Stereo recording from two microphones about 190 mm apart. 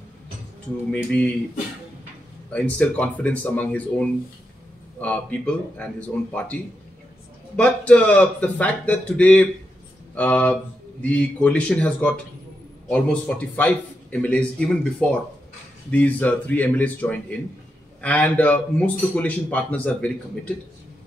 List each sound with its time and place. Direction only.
0.9 s speech: 5° left (ahead or behind)
2.5 s speech: 5° left (ahead or behind)